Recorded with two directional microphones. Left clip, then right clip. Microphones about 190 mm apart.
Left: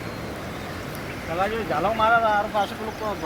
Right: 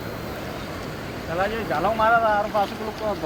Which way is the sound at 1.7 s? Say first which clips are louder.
Right 1 dB; centre (ahead or behind).